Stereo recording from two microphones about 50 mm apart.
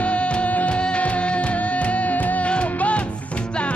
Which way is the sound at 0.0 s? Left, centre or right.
Left.